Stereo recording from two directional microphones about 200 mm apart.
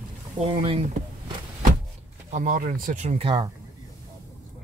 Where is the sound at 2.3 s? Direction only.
40° right (ahead or behind).